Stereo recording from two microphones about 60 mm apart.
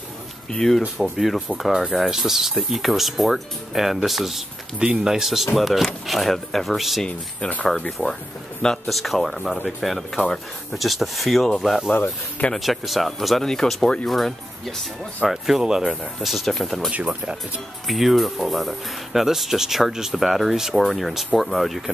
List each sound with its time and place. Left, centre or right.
0.5 s speech: centre
7.1 s speech: left
8.8 s speech: centre
14.0 s speech: centre
16.9 s speech: right
17.8 s speech: centre